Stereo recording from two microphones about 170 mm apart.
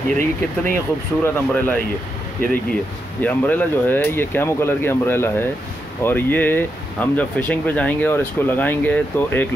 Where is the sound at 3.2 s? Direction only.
10° left (ahead or behind).